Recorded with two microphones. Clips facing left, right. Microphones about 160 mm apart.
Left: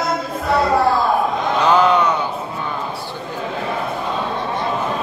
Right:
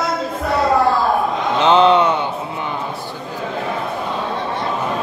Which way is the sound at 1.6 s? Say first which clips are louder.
Right 3 dB; 25° right (ahead or behind).